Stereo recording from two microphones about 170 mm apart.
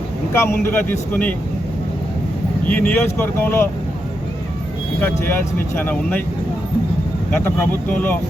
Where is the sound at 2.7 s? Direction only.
10° left (ahead or behind).